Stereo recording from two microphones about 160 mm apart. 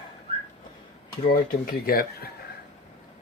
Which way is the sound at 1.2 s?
60° left (ahead or behind).